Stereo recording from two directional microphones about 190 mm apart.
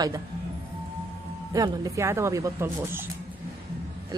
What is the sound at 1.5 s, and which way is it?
A woman's voice, 20° right (ahead or behind).